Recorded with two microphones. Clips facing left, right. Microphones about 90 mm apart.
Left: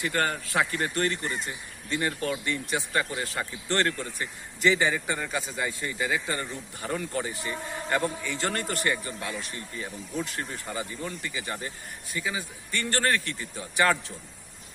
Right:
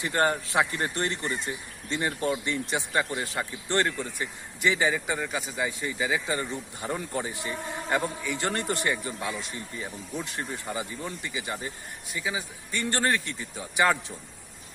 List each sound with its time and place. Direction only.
0.0 s a man's voice: 20° right (ahead or behind)